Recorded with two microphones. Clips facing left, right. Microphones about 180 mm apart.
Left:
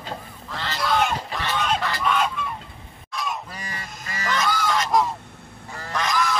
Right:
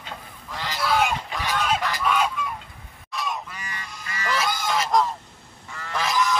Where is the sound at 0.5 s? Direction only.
10° right (ahead or behind).